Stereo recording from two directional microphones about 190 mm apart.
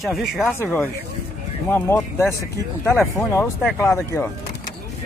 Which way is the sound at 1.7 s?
15° left (ahead or behind).